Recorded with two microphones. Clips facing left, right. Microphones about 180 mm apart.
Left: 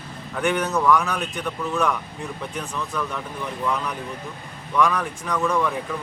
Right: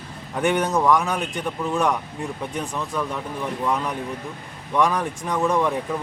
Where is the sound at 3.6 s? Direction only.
20° right (ahead or behind).